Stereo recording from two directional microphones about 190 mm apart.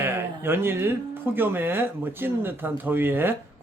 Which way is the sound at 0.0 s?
10° right (ahead or behind).